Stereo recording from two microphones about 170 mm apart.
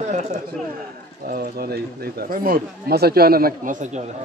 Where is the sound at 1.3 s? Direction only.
65° right (ahead or behind); by 4.1 s 45° right (ahead or behind).